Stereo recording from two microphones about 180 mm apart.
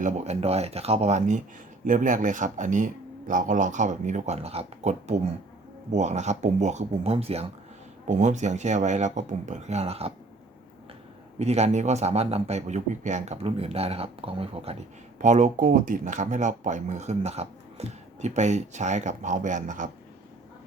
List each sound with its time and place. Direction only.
0.0 s speech: 40° right (ahead or behind)
11.3 s speech: 35° right (ahead or behind)